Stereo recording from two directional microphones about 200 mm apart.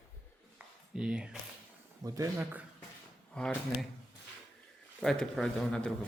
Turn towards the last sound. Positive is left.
turn(degrees=5)  # may be behind; listen again after turning